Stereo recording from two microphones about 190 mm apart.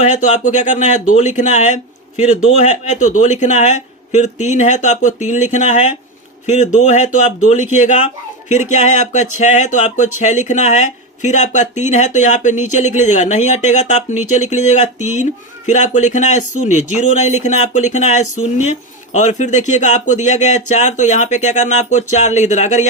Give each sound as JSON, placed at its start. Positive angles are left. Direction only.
{"t": 0.0, "sound": "speech", "side_deg": 40}